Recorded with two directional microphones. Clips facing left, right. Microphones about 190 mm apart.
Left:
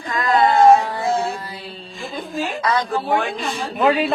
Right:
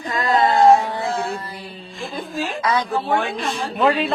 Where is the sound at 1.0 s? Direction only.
20° left (ahead or behind).